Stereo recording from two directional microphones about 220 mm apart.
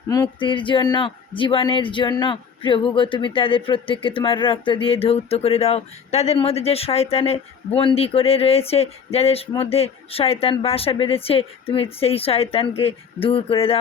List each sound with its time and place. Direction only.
0.1 s speech: 20° left (ahead or behind)